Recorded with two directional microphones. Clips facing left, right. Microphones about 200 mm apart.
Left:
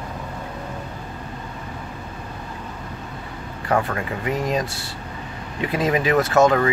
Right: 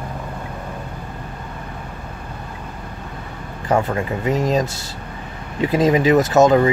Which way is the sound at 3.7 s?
25° right (ahead or behind).